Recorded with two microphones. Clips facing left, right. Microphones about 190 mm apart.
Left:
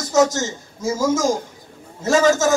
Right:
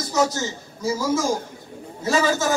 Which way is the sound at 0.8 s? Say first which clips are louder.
Left 3 dB; 45° left (ahead or behind).